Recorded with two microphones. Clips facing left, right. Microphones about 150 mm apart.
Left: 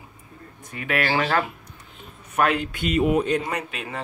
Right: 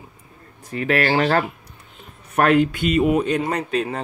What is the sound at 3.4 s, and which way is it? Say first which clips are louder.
Speech: right 8 dB; 35° right (ahead or behind).